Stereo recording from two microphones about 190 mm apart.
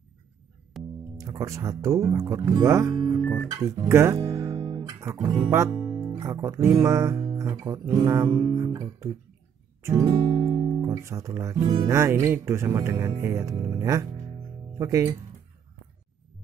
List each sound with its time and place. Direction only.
0.7 s music: centre (ahead or behind)
1.1 s speech: 20° right (ahead or behind)
4.2 s guitar: 20° right (ahead or behind)
5.1 s speech: 20° right (ahead or behind)